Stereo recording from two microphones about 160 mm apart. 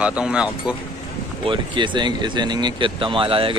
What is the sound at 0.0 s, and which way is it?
Speech, 5° right (ahead or behind).